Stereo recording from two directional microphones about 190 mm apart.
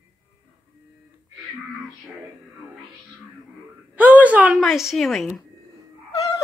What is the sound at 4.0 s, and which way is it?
A woman's voice, 10° right (ahead or behind).